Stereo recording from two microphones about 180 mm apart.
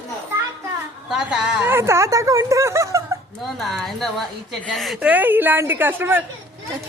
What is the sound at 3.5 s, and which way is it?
A woman's voice, centre (ahead or behind).